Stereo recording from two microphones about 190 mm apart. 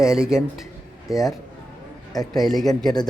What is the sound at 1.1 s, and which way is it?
A man's voice, 20° left (ahead or behind).